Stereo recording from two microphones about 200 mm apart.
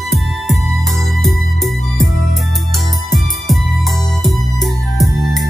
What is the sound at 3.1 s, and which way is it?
Music, centre (ahead or behind).